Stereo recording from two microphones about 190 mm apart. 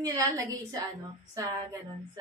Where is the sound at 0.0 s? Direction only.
15° right (ahead or behind).